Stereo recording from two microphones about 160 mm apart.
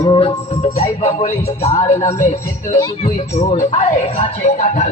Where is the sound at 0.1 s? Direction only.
35° left (ahead or behind).